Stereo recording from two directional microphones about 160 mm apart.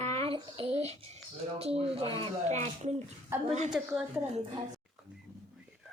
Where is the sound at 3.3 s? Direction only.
15° right (ahead or behind).